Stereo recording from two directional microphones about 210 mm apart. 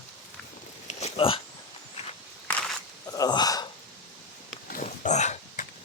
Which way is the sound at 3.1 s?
20° left (ahead or behind).